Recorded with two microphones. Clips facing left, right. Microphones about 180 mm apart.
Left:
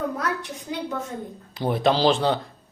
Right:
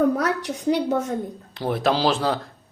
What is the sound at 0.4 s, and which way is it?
Speech, 75° right (ahead or behind).